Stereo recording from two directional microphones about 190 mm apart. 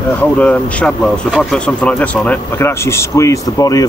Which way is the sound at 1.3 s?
5° left (ahead or behind).